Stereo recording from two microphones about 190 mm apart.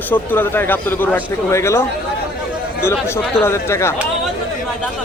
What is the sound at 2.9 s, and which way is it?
A man's voice, 10° left (ahead or behind).